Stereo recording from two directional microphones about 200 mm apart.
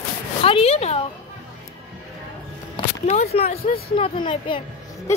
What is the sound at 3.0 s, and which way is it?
Speech, 35° left (ahead or behind).